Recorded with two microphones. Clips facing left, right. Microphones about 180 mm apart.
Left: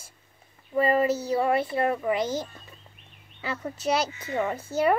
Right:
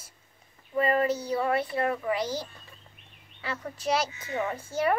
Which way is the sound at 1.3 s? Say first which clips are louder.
Left 3 dB; 25° left (ahead or behind).